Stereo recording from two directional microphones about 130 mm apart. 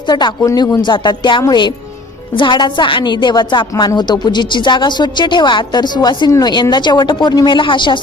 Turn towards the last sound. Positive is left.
turn(degrees=40)  # may be behind; listen again after turning